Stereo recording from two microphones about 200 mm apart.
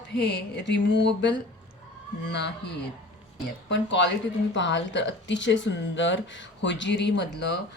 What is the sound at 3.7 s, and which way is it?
A woman's voice, 65° left (ahead or behind).